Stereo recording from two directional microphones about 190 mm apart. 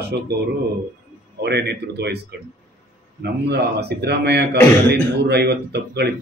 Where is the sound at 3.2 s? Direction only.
60° right (ahead or behind).